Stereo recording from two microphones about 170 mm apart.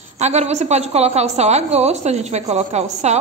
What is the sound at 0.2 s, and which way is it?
A woman's voice, 40° right (ahead or behind).